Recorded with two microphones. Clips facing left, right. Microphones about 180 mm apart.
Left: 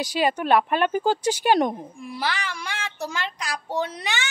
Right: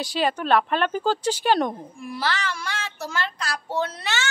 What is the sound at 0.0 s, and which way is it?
Speech, 10° left (ahead or behind).